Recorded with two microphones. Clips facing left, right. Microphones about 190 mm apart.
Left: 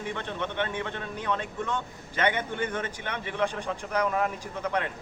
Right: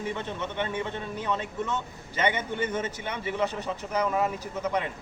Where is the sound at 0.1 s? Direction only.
10° right (ahead or behind).